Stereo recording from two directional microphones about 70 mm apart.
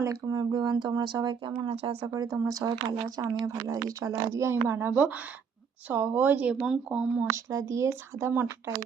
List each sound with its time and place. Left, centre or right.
0.0 s speech: right
0.3 s speech: right
2.1 s speech: right
2.4 s a woman's voice: right
4.9 s speech: right
7.3 s a woman's voice: right